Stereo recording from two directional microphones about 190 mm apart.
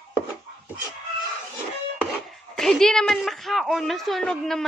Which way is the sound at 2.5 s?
5° left (ahead or behind).